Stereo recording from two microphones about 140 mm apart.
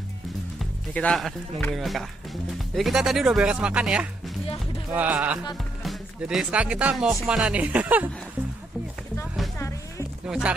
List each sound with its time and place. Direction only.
0.6 s speech: 5° left (ahead or behind); by 8.1 s 10° right (ahead or behind)
9.6 s music: 20° left (ahead or behind)
10.2 s speech: 5° right (ahead or behind)